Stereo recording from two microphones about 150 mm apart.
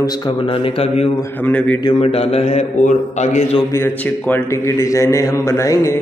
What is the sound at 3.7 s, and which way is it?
A man's voice, 15° left (ahead or behind).